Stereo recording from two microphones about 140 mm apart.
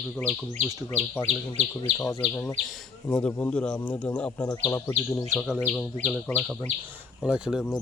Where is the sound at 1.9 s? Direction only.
45° right (ahead or behind).